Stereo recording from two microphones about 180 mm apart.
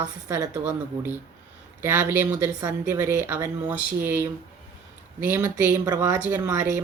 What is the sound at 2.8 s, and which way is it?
Speech, 10° right (ahead or behind).